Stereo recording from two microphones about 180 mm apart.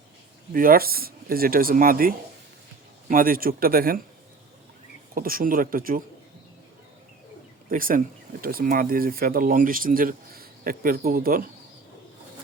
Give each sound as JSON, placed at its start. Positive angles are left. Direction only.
{"t": 0.5, "sound": "speech", "side_deg": -50}
{"t": 5.1, "sound": "speech", "side_deg": -50}
{"t": 7.7, "sound": "speech", "side_deg": -50}